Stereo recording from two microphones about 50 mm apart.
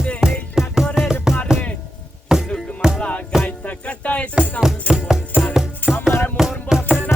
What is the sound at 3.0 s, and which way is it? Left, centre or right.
Music, left.